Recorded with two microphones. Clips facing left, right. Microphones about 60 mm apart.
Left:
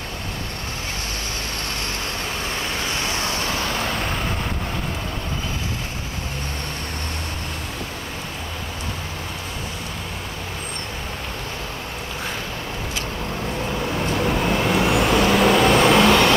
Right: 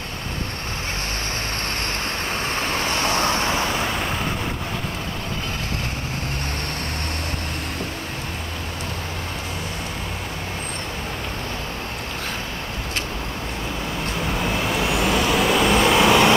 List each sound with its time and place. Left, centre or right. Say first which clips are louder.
2.5 s vehicle: right 4 dB; right
3.7 s vehicle: right 1 dB; centre
14.4 s vehicle: left 1 dB; centre
15.0 s vehicle: left 1 dB; centre
15.5 s vehicle: even; centre
16.0 s vehicle: even; centre